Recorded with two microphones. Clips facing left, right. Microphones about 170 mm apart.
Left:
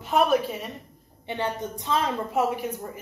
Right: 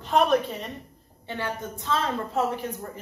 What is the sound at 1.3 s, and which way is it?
A woman's voice, 20° left (ahead or behind).